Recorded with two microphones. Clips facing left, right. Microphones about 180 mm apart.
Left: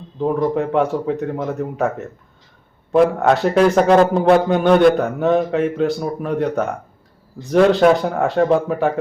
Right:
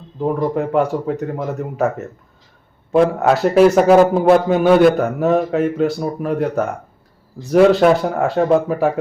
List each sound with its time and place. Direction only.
0.2 s a man's voice: 5° right (ahead or behind)